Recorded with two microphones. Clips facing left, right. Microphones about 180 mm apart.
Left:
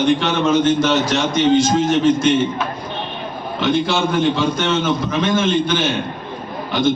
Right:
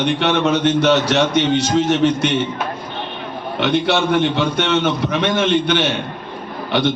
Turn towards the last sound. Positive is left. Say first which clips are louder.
# right 1 dB
turn(degrees=-65)  # may be behind; listen again after turning